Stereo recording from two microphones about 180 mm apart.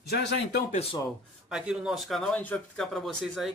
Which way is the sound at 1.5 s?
5° right (ahead or behind).